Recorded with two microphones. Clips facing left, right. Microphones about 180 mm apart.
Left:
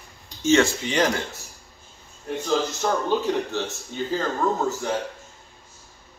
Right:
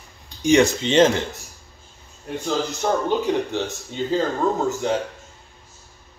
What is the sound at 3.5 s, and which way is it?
Speech, 15° right (ahead or behind).